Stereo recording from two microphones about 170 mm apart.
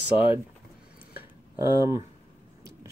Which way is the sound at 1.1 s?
15° right (ahead or behind).